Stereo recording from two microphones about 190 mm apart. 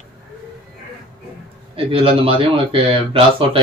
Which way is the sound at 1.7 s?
30° right (ahead or behind).